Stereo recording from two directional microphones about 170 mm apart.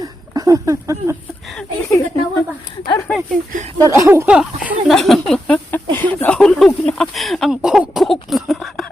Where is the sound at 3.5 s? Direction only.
45° right (ahead or behind).